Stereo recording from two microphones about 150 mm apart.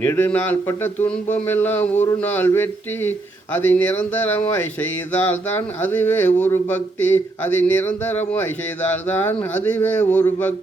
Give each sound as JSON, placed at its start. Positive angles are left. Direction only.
{"t": 0.0, "sound": "speech", "side_deg": 15}